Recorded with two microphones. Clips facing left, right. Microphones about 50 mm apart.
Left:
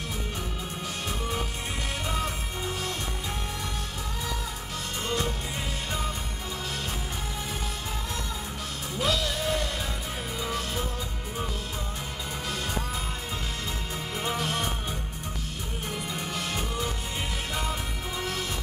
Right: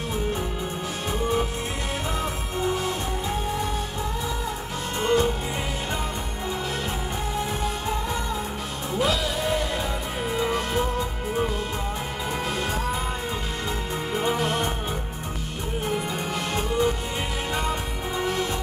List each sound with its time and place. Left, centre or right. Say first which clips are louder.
2.1 s music: right 4 dB; centre
5.0 s music: right 9 dB; centre
8.9 s music: right 4 dB; centre
10.3 s music: right 8 dB; right
10.7 s music: right 7 dB; centre
14.1 s music: right 5 dB; centre
16.5 s music: right 12 dB; centre
18.2 s music: right 7 dB; centre